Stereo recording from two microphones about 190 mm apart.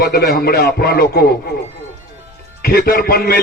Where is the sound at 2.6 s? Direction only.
55° left (ahead or behind).